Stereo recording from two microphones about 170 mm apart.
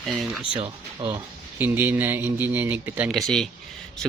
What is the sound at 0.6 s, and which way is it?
Speech, 30° right (ahead or behind).